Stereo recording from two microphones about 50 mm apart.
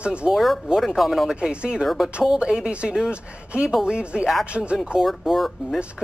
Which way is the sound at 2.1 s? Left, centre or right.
Centre.